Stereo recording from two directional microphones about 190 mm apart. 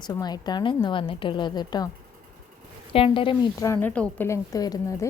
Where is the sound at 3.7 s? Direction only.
10° left (ahead or behind).